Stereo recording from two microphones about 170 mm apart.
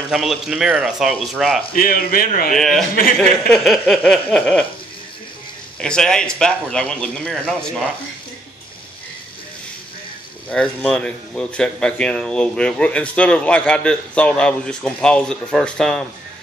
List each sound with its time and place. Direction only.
0.1 s a man's voice: centre (ahead or behind)
1.7 s speech: 60° left (ahead or behind)
2.5 s a man's voice: centre (ahead or behind)
5.8 s a man's voice: 5° left (ahead or behind)
10.5 s a man's voice: 5° left (ahead or behind)